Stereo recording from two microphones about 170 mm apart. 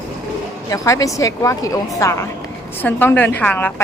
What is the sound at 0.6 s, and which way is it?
A woman's voice, 20° left (ahead or behind).